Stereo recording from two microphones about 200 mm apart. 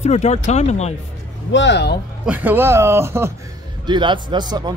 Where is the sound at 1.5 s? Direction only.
60° left (ahead or behind).